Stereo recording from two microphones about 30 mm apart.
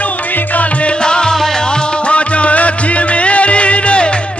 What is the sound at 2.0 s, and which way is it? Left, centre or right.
Music, left.